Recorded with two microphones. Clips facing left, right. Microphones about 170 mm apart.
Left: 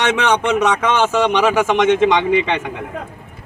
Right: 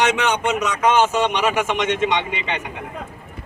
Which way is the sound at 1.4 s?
90° left.